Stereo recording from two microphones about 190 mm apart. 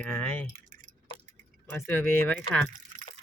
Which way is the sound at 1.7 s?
10° left (ahead or behind).